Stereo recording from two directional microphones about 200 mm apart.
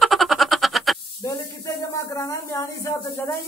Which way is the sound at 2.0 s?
15° left (ahead or behind).